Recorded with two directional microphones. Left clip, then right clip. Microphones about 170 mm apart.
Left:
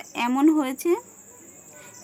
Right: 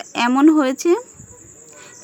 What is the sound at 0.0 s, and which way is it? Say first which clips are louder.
Speech: right 7 dB; 35° right (ahead or behind).